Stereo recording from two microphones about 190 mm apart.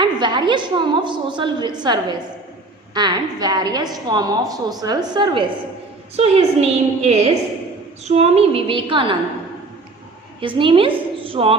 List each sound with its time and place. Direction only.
0.0 s a woman's voice: 25° right (ahead or behind)
10.4 s a woman's voice: 25° right (ahead or behind)
11.2 s a sound: 30° right (ahead or behind)